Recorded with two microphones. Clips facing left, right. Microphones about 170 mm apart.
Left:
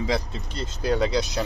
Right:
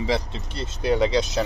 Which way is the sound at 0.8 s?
20° right (ahead or behind).